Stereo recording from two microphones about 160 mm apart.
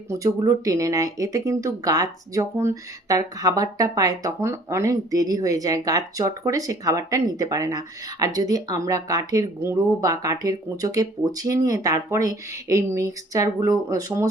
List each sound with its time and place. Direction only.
0.1 s speech: 20° right (ahead or behind)